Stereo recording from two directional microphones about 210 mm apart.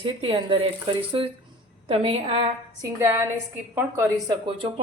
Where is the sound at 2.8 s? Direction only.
10° right (ahead or behind).